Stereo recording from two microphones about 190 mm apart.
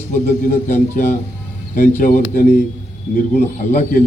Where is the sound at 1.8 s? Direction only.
45° left (ahead or behind).